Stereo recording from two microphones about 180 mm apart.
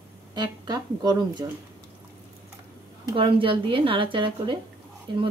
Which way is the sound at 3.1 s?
30° right (ahead or behind).